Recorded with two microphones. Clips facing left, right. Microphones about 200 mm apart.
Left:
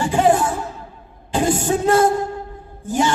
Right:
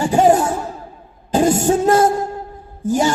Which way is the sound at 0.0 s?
40° right (ahead or behind).